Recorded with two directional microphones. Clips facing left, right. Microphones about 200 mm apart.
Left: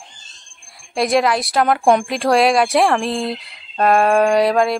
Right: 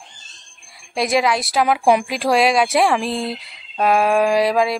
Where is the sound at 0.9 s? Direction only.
Centre (ahead or behind).